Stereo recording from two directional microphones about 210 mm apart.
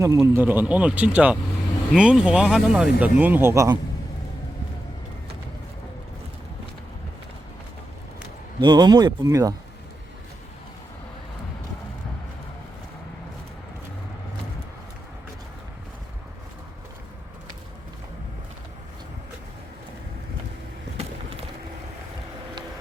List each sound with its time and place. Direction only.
0.0 s speech: 15° right (ahead or behind)
8.6 s speech: 20° right (ahead or behind)